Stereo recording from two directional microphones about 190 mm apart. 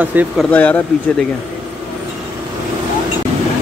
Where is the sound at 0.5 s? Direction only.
10° left (ahead or behind).